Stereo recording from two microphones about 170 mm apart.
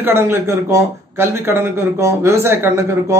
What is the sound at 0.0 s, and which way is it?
Speech, 15° right (ahead or behind).